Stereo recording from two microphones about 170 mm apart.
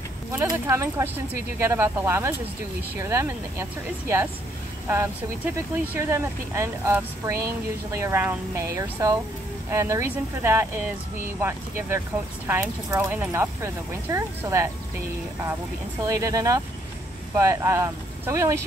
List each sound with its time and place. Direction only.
0.3 s speech: 15° right (ahead or behind)
4.8 s speech: 15° right (ahead or behind)
16.0 s speech: 20° right (ahead or behind)